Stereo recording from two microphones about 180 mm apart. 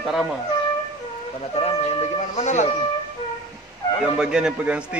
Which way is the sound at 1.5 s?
35° left (ahead or behind).